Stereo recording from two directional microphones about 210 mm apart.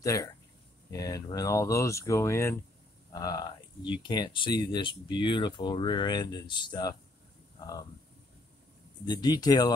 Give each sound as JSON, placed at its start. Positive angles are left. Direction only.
{"t": 0.0, "sound": "speech", "side_deg": 15}
{"t": 9.0, "sound": "speech", "side_deg": 20}